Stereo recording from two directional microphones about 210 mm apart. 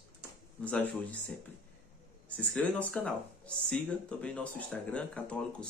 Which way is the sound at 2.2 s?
5° left (ahead or behind).